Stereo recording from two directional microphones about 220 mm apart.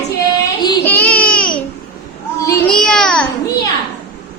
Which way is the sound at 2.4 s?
10° left (ahead or behind).